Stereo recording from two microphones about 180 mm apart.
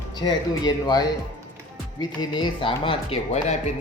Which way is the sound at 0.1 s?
25° left (ahead or behind).